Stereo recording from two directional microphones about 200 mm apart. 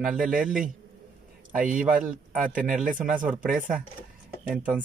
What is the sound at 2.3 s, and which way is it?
Speech, 5° right (ahead or behind).